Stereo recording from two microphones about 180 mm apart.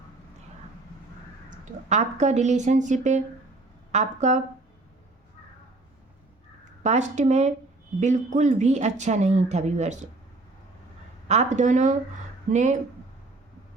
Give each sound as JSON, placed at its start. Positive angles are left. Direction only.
{"t": 1.5, "sound": "speech", "side_deg": -40}
{"t": 6.8, "sound": "speech", "side_deg": -40}
{"t": 11.3, "sound": "speech", "side_deg": -40}